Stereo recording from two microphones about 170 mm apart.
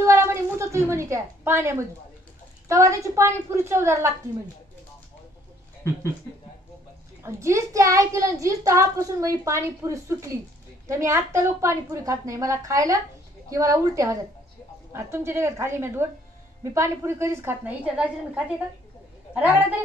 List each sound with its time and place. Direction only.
0.0 s a sound: 15° right (ahead or behind)
2.7 s a child's voice: 20° right (ahead or behind)
7.2 s a child's voice: 15° right (ahead or behind)